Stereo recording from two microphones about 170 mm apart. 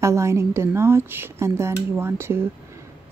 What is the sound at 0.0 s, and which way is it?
Speech, 15° right (ahead or behind).